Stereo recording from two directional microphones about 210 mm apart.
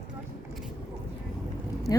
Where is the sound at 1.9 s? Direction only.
15° left (ahead or behind).